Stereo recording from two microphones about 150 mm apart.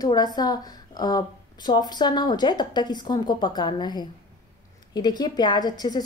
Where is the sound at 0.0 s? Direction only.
25° left (ahead or behind).